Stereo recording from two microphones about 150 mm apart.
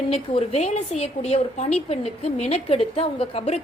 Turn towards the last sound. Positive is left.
turn(degrees=45)  # may be behind; listen again after turning